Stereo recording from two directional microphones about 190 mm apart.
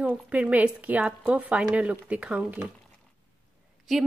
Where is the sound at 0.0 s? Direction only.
5° right (ahead or behind).